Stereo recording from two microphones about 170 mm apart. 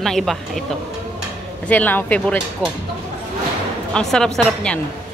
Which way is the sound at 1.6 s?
10° left (ahead or behind).